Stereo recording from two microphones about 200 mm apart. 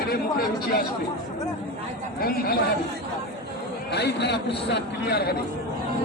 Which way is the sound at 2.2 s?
50° left (ahead or behind).